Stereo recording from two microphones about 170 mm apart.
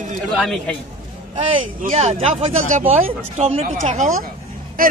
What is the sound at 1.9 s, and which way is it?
Speech, 40° right (ahead or behind).